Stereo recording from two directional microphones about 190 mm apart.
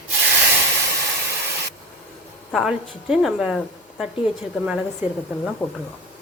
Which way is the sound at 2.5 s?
Centre (ahead or behind).